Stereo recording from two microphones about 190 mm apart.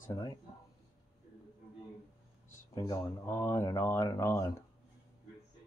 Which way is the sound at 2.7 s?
20° left (ahead or behind).